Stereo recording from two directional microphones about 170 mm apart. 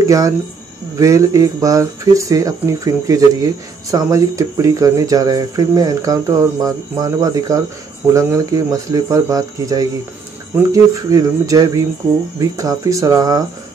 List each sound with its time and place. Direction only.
0.0 s speech: 20° right (ahead or behind)